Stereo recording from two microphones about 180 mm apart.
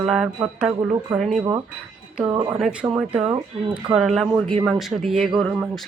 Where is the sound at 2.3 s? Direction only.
25° right (ahead or behind).